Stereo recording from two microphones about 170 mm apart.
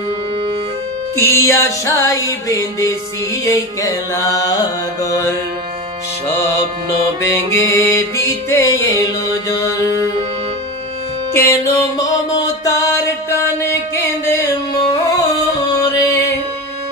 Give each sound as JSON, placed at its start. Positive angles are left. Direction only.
{"t": 1.2, "sound": "music", "side_deg": 15}
{"t": 3.4, "sound": "mantra", "side_deg": 20}
{"t": 6.3, "sound": "music", "side_deg": 15}
{"t": 11.3, "sound": "music", "side_deg": 15}